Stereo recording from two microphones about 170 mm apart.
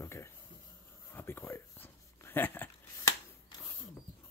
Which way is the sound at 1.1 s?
15° left (ahead or behind).